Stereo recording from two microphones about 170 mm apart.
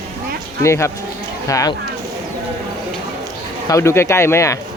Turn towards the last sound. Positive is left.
turn(degrees=15)  # may be behind; listen again after turning